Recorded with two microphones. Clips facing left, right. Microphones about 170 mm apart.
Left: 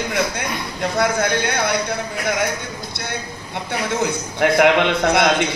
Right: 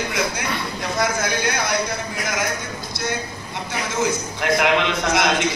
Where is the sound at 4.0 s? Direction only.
60° left (ahead or behind).